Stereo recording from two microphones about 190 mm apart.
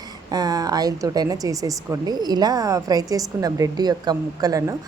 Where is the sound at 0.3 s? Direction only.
20° right (ahead or behind).